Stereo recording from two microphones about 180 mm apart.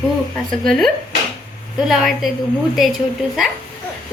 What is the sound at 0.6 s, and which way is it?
A woman's voice, centre (ahead or behind).